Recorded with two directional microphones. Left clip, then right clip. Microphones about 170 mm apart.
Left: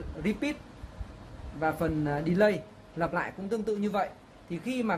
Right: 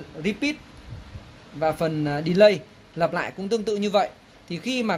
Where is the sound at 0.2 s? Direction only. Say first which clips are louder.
Right 6 dB; 60° right (ahead or behind).